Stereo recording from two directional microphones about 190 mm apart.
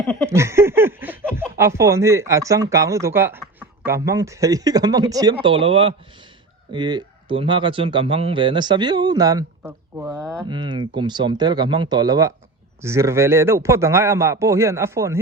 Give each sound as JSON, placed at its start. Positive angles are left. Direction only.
{"t": 0.3, "sound": "speech", "side_deg": -15}